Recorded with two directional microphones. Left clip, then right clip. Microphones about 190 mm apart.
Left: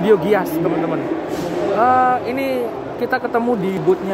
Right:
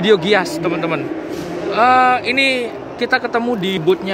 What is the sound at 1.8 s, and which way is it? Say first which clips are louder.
Speech: right 3 dB; 20° right (ahead or behind).